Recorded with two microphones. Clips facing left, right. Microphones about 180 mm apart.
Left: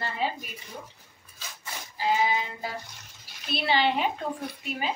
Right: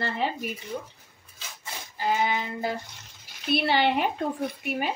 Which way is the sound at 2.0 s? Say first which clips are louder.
Even; 60° right (ahead or behind).